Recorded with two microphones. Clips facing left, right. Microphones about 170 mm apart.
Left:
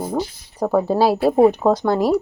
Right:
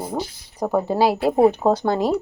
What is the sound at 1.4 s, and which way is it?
Speech, 30° right (ahead or behind).